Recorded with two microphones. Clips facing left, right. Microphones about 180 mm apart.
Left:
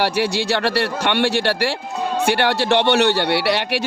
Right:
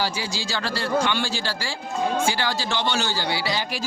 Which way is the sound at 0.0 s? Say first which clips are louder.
Left 8 dB; 65° left (ahead or behind).